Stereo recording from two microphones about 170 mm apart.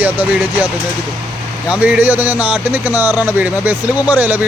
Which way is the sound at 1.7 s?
10° right (ahead or behind).